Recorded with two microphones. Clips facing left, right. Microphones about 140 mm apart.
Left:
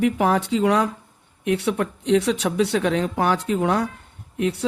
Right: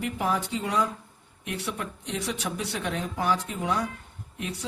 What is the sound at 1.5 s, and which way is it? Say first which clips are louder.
Speech: left 11 dB; 65° left (ahead or behind).